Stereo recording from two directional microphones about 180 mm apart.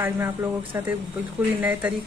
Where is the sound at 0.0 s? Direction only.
10° right (ahead or behind).